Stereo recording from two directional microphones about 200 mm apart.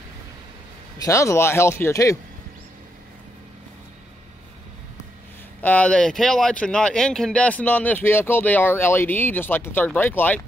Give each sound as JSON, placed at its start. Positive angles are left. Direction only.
{"t": 0.9, "sound": "speech", "side_deg": 15}
{"t": 5.6, "sound": "speech", "side_deg": 5}